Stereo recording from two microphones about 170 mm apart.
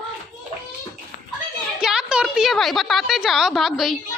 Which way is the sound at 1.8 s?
5° right (ahead or behind).